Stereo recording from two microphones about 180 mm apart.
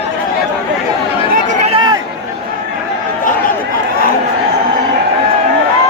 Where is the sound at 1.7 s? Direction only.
25° right (ahead or behind).